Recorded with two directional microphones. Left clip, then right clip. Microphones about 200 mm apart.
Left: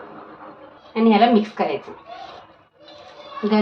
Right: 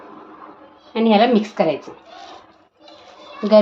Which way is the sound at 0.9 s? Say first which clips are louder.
Right 1 dB; 60° right (ahead or behind).